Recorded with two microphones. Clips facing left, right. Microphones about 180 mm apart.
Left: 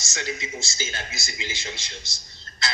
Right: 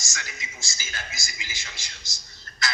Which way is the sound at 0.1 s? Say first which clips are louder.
Left 11 dB; 25° left (ahead or behind).